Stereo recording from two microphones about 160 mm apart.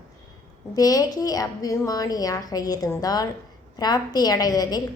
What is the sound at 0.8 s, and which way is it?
A woman's voice, 25° left (ahead or behind).